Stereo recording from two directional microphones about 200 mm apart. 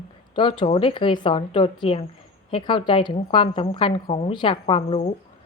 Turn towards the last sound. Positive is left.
turn(degrees=30)  # may be behind; listen again after turning